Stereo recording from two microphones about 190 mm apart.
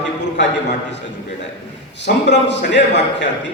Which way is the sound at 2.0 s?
65° left (ahead or behind).